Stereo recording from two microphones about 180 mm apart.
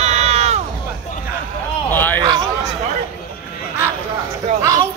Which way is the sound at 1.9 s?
10° left (ahead or behind).